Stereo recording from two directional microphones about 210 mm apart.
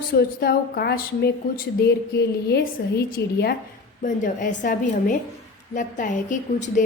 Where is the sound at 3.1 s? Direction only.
45° left (ahead or behind).